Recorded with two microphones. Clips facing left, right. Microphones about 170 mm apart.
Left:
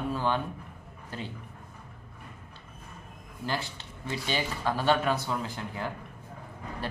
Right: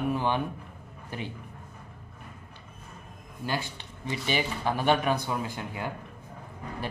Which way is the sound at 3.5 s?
15° right (ahead or behind).